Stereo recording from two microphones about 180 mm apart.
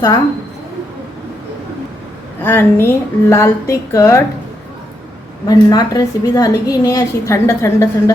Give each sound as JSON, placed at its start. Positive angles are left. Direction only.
{"t": 2.4, "sound": "a woman's voice", "side_deg": 10}
{"t": 5.5, "sound": "a woman's voice", "side_deg": 20}